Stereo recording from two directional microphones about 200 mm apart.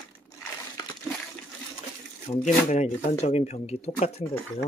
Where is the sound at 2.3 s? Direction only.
35° left (ahead or behind).